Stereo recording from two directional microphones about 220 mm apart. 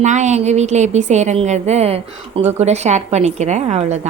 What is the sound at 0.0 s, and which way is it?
A woman's voice, 35° right (ahead or behind).